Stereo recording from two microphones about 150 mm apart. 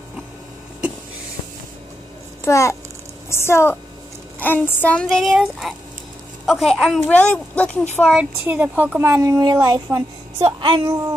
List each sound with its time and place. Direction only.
2.4 s a child's voice: 20° left (ahead or behind)
8.1 s speech: 10° right (ahead or behind); by 11.0 s 30° right (ahead or behind)